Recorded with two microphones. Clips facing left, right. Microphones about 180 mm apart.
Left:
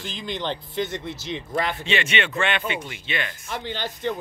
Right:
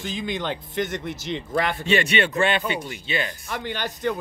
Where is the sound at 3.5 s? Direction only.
50° right (ahead or behind).